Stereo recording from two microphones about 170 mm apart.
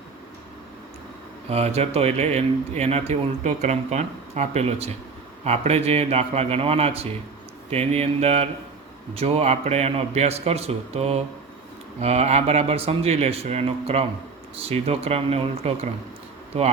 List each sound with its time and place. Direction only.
1.5 s speech: 35° right (ahead or behind)